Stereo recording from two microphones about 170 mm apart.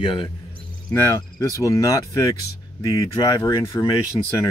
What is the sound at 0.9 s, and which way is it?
Speech, 15° left (ahead or behind).